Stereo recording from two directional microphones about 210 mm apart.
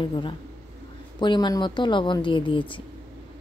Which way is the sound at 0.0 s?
20° left (ahead or behind).